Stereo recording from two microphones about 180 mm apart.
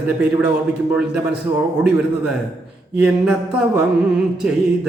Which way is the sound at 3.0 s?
5° right (ahead or behind).